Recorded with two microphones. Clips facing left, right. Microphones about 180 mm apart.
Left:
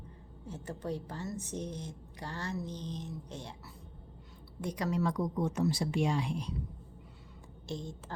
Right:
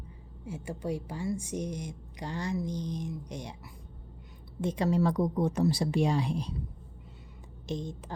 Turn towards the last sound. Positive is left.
turn(degrees=-20)  # may be behind; listen again after turning